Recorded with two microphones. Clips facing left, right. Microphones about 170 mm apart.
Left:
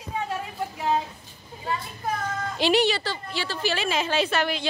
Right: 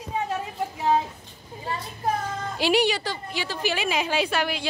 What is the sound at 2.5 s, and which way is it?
A woman's voice, 10° right (ahead or behind).